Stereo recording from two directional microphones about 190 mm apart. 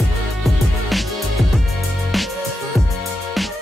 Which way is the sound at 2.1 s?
Centre (ahead or behind).